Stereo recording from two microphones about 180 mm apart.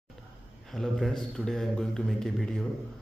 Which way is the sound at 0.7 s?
Centre (ahead or behind).